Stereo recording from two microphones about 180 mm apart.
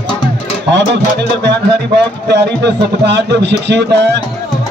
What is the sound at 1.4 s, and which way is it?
Speech, 70° right (ahead or behind).